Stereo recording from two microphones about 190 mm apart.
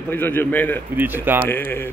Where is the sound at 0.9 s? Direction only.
10° right (ahead or behind).